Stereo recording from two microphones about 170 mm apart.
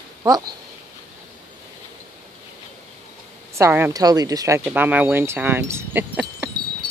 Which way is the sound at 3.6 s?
10° right (ahead or behind).